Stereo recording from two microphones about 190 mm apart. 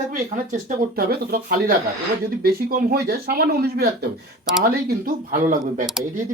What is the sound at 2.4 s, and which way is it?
Speech, 50° right (ahead or behind).